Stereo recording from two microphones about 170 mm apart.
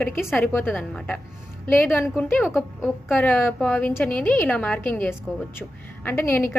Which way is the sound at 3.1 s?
10° left (ahead or behind).